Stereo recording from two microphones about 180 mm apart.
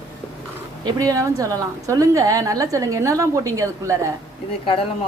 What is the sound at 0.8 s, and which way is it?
A woman's voice, 20° right (ahead or behind).